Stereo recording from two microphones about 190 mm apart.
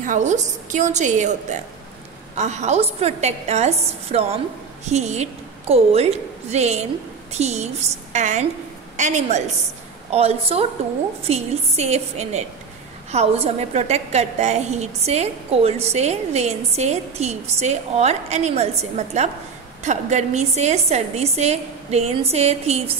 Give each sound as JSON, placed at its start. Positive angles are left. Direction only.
{"t": 0.0, "sound": "a woman's voice", "side_deg": -40}
{"t": 2.3, "sound": "a woman's voice", "side_deg": -35}